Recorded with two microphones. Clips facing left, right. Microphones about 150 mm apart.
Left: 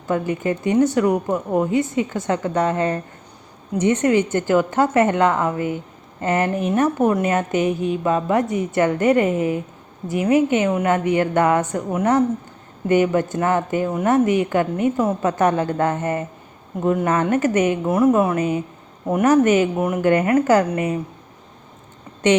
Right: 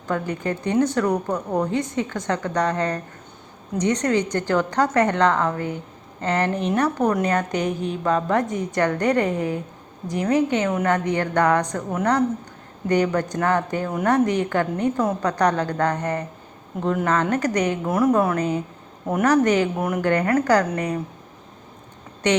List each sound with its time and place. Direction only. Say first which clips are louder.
0.1 s a woman's voice: left 4 dB; 15° left (ahead or behind)
6.7 s a woman's voice: left 4 dB; 20° left (ahead or behind)
8.4 s a woman's voice: left 4 dB; 40° right (ahead or behind)
8.8 s a woman's voice: left 3 dB; 20° left (ahead or behind)